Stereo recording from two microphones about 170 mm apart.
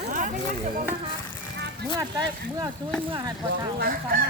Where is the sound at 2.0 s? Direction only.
25° right (ahead or behind).